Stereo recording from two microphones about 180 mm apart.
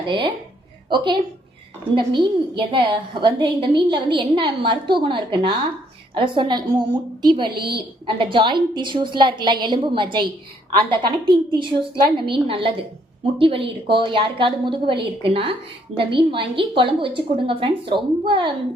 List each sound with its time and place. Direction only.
0.9 s a woman's voice: 25° right (ahead or behind)